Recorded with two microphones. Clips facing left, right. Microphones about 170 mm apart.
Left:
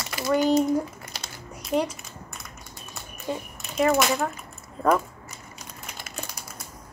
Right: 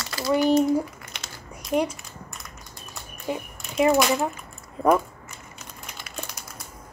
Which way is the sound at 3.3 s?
15° right (ahead or behind).